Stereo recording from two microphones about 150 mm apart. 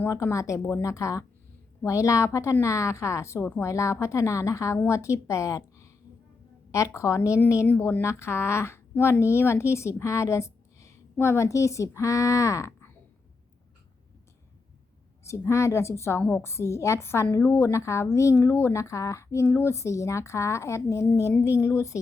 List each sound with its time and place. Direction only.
0.0 s a woman's voice: 20° left (ahead or behind)
15.2 s a woman's voice: 20° left (ahead or behind)